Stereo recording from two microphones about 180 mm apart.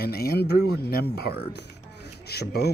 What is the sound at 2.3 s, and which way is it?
Speech, 65° left (ahead or behind).